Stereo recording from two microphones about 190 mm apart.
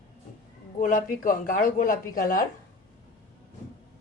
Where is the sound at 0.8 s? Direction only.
45° left (ahead or behind).